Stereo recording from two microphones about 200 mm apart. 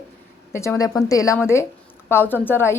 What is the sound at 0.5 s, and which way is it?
A woman's voice, 15° left (ahead or behind).